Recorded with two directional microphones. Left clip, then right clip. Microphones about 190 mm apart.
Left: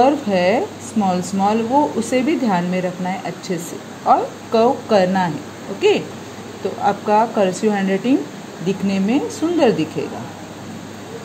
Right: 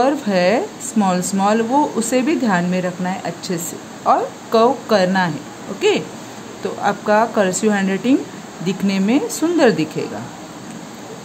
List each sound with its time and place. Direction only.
0.0 s speech: 15° right (ahead or behind)